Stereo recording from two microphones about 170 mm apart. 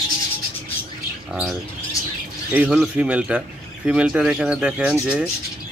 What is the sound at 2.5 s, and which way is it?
Speech, 10° right (ahead or behind).